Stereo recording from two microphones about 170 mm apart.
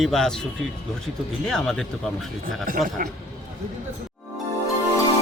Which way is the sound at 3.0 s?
55° right (ahead or behind).